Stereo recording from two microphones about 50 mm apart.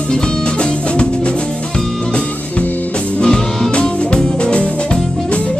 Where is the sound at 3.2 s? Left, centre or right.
Centre.